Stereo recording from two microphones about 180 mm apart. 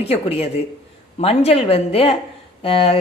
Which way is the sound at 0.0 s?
35° left (ahead or behind).